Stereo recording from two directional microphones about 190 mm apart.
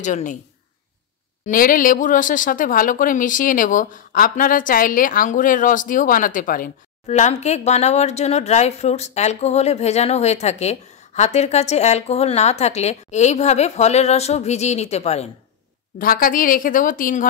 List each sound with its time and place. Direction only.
0.0 s speech: 40° left (ahead or behind)
1.4 s speech: 45° left (ahead or behind)
16.0 s a woman's voice: 50° left (ahead or behind)